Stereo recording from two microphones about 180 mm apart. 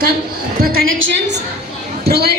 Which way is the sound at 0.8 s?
90° right.